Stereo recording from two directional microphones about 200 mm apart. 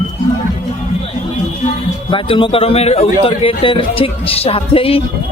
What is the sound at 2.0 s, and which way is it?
A man's voice, 25° left (ahead or behind).